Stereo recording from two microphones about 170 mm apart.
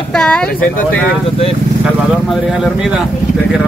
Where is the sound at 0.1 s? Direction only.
5° left (ahead or behind).